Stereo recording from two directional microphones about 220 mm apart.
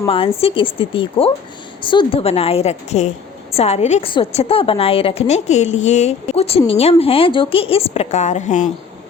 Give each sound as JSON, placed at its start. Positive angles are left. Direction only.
{"t": 0.0, "sound": "a woman's voice", "side_deg": 25}